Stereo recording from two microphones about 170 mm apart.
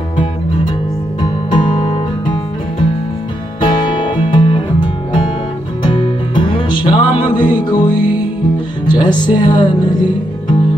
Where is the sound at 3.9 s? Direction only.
25° left (ahead or behind).